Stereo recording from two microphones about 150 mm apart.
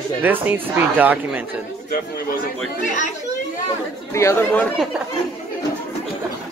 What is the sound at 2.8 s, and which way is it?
Speech, 60° left (ahead or behind).